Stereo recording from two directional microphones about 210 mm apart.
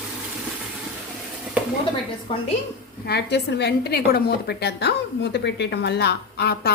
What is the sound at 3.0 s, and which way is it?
A woman's voice, 50° left (ahead or behind).